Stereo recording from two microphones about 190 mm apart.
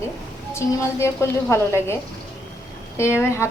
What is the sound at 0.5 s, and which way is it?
A woman's voice, 15° left (ahead or behind).